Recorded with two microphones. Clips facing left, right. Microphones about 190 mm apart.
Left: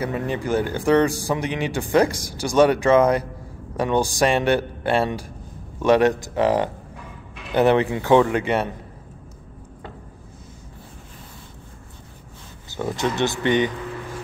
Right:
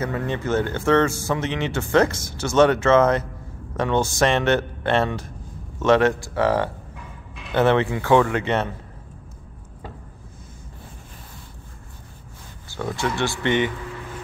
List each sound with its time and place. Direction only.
0.0 s speech: 15° left (ahead or behind)
12.7 s speech: 20° left (ahead or behind)